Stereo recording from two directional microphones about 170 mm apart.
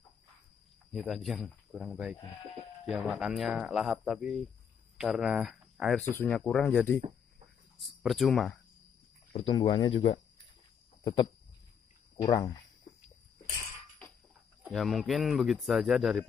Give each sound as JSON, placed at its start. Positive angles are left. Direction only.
{"t": 0.9, "sound": "speech", "side_deg": 0}
{"t": 9.3, "sound": "speech", "side_deg": 30}
{"t": 12.2, "sound": "speech", "side_deg": 25}
{"t": 14.6, "sound": "speech", "side_deg": 0}